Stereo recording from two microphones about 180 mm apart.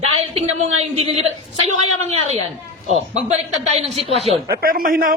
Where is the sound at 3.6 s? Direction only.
35° right (ahead or behind).